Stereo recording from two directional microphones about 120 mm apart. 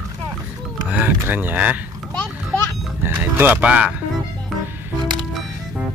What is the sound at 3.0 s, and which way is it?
Music, 15° right (ahead or behind).